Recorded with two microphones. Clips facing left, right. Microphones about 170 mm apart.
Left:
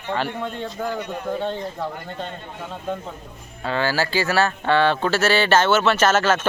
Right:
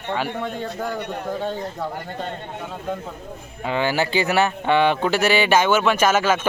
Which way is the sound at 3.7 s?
15° right (ahead or behind).